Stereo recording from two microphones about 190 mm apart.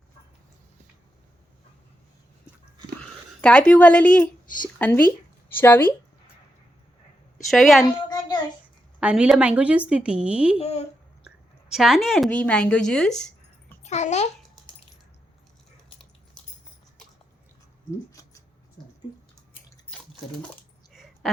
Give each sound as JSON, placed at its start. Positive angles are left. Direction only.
{"t": 3.0, "sound": "speech", "side_deg": 5}
{"t": 4.4, "sound": "speech", "side_deg": 45}
{"t": 4.8, "sound": "speech", "side_deg": 10}
{"t": 7.5, "sound": "a woman's voice", "side_deg": 0}
{"t": 9.0, "sound": "speech", "side_deg": -5}
{"t": 10.6, "sound": "speech", "side_deg": 35}
{"t": 11.7, "sound": "speech", "side_deg": 0}
{"t": 13.8, "sound": "a child's voice", "side_deg": 35}
{"t": 18.1, "sound": "a sound", "side_deg": 20}
{"t": 20.9, "sound": "a sound", "side_deg": 0}